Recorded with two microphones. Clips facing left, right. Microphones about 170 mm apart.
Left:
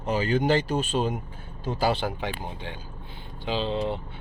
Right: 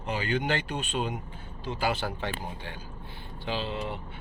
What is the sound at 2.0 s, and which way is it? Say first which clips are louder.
Speech: left 3 dB; 15° left (ahead or behind).